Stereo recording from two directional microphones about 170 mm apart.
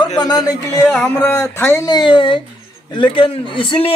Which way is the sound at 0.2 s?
20° left (ahead or behind).